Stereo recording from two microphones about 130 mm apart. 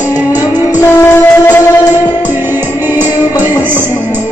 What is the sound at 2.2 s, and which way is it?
Music, 15° right (ahead or behind).